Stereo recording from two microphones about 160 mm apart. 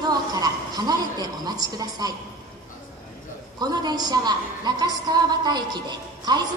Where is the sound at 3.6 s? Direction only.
25° right (ahead or behind).